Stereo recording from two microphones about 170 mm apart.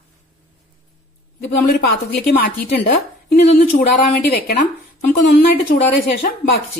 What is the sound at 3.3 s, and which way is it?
A woman's voice, 55° left (ahead or behind).